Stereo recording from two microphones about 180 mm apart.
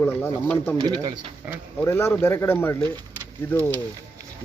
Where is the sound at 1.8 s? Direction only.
15° left (ahead or behind).